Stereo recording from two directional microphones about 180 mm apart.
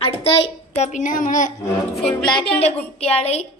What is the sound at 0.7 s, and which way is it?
Speech, 40° left (ahead or behind).